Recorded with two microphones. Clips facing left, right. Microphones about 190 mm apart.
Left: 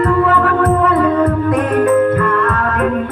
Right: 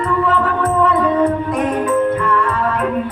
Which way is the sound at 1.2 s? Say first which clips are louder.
Left 2 dB; 60° left (ahead or behind).